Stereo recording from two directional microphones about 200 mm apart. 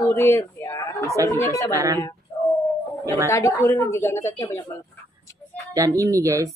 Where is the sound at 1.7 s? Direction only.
15° right (ahead or behind).